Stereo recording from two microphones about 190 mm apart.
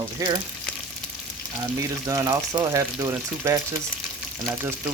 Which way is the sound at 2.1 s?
20° right (ahead or behind).